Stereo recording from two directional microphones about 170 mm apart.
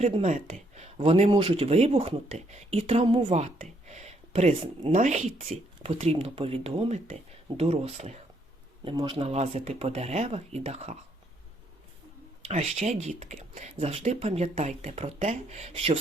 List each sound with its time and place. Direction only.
0.0 s speech: 40° right (ahead or behind)
12.5 s speech: 40° right (ahead or behind)